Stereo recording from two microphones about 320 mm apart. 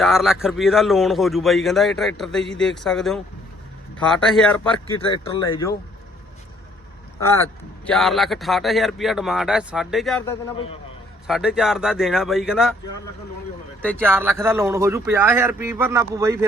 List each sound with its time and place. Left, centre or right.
0.0 s a man's voice: centre
4.9 s speech: centre
7.2 s a man's voice: centre
14.0 s speech: centre